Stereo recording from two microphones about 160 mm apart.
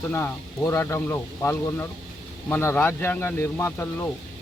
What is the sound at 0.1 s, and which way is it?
Speech, 15° left (ahead or behind).